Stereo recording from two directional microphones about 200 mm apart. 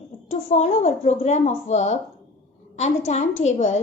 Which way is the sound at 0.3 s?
35° left (ahead or behind).